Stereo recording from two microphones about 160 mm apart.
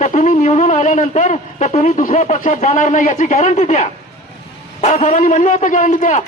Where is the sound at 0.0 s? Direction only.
50° left (ahead or behind).